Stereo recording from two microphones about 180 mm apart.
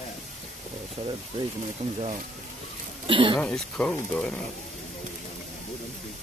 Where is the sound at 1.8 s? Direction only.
40° right (ahead or behind).